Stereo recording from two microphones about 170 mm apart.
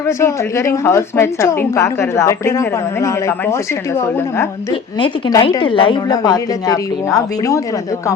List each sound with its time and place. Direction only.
0.2 s a woman's voice: 15° left (ahead or behind)
4.9 s a woman's voice: 30° left (ahead or behind)